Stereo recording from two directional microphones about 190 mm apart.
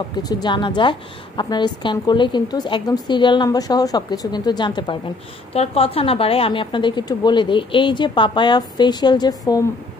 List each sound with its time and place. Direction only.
0.2 s a woman's voice: 20° left (ahead or behind)